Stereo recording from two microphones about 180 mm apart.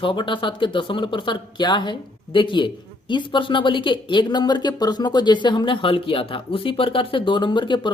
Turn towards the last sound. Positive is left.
turn(degrees=25)  # may be behind; listen again after turning